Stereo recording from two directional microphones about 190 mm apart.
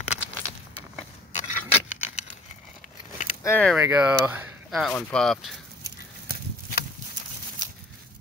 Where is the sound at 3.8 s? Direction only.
10° right (ahead or behind).